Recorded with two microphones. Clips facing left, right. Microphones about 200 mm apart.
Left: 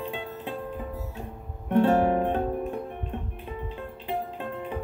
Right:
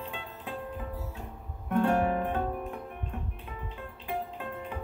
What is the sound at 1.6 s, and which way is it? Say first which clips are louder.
Music: left 5 dB; 30° left (ahead or behind).